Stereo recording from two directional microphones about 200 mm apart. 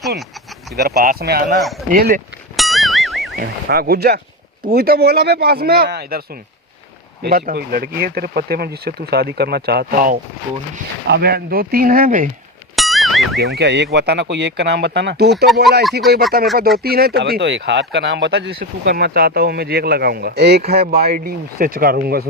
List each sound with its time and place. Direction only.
0.8 s speech: 50° right (ahead or behind)
2.6 s a sound: centre (ahead or behind)
3.3 s speech: 50° right (ahead or behind)
12.7 s a sound: centre (ahead or behind)
13.6 s speech: 55° right (ahead or behind)
15.8 s speech: centre (ahead or behind)
16.3 s speech: 50° right (ahead or behind)